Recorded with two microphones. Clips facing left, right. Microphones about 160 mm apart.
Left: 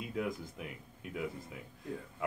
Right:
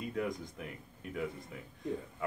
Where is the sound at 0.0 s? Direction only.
5° left (ahead or behind).